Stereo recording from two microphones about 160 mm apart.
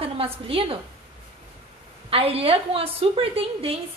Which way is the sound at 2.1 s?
40° right (ahead or behind).